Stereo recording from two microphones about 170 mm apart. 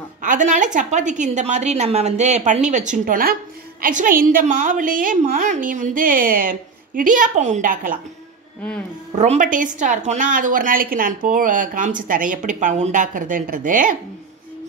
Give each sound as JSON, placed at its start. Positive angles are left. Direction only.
{"t": 0.2, "sound": "a woman's voice", "side_deg": -50}
{"t": 9.2, "sound": "a woman's voice", "side_deg": -45}